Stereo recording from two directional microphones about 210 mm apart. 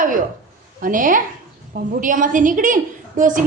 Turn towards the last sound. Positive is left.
turn(degrees=-40)  # may be behind; listen again after turning